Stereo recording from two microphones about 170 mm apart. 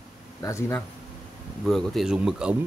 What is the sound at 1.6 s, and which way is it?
Speech, centre (ahead or behind).